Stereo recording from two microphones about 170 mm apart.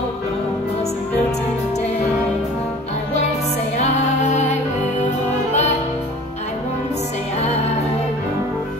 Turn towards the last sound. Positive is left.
turn(degrees=40)  # may be behind; listen again after turning